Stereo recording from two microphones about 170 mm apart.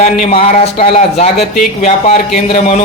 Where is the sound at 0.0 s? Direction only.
40° left (ahead or behind).